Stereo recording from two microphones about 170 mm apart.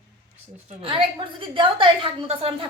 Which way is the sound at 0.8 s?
30° right (ahead or behind).